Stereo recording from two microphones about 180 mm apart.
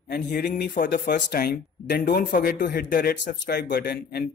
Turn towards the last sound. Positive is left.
turn(degrees=60)  # may be behind; listen again after turning